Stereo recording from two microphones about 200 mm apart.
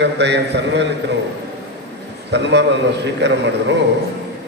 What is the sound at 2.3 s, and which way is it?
A man's voice, 60° right (ahead or behind).